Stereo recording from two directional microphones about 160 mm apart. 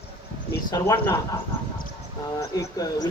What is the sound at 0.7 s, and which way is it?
Speech, 20° left (ahead or behind).